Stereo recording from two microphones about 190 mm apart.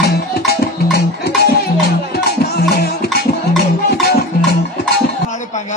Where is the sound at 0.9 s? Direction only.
60° left (ahead or behind).